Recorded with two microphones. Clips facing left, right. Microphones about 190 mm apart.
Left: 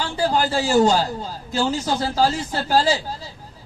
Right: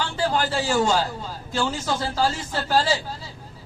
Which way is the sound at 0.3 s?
40° left (ahead or behind).